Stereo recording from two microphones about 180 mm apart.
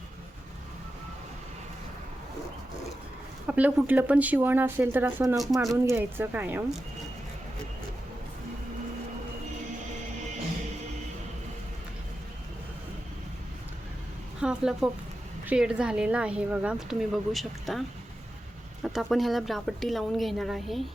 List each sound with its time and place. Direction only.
3.4 s speech: 10° right (ahead or behind)
14.4 s speech: 5° right (ahead or behind)